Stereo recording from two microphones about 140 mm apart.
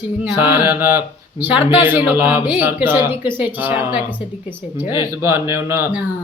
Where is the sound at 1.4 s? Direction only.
15° right (ahead or behind).